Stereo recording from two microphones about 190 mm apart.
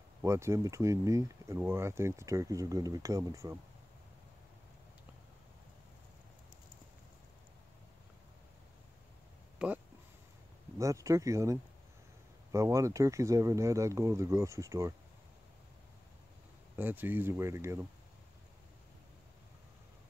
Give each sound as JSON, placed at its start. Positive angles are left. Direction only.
{"t": 0.2, "sound": "speech", "side_deg": -15}
{"t": 9.6, "sound": "a sound", "side_deg": -5}
{"t": 10.8, "sound": "speech", "side_deg": -15}
{"t": 16.7, "sound": "speech", "side_deg": -10}